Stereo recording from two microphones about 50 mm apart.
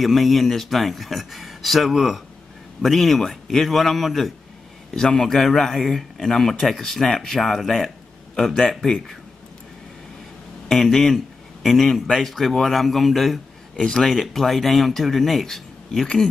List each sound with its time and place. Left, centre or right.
0.0 s speech: centre
4.9 s speech: centre
8.5 s speech: centre
10.7 s a man's voice: centre
11.9 s speech: centre
13.7 s speech: centre
14.0 s speech: centre